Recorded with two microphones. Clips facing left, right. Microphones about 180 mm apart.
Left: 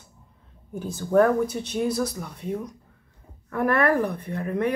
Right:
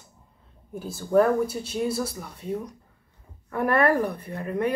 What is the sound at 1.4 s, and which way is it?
Speech, 5° right (ahead or behind).